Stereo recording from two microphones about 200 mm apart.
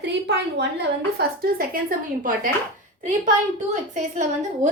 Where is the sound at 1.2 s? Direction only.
50° right (ahead or behind).